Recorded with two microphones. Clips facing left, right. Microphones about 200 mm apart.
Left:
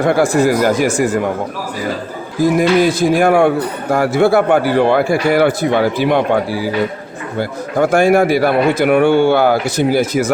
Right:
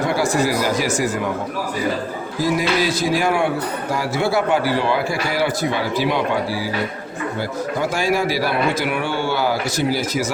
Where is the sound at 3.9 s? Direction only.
55° left (ahead or behind).